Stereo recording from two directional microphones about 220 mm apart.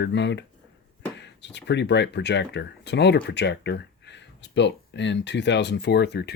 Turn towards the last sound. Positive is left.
turn(degrees=50)  # may be behind; listen again after turning